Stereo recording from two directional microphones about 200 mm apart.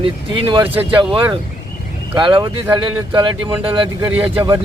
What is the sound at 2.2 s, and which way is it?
Speech, 25° right (ahead or behind).